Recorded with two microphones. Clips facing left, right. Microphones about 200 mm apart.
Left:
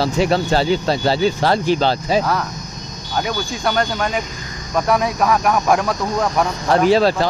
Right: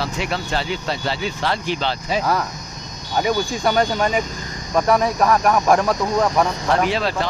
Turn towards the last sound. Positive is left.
turn(degrees=35)  # may be behind; listen again after turning